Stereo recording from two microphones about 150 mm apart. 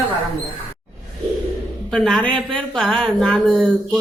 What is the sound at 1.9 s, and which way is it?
A woman's voice, 5° left (ahead or behind).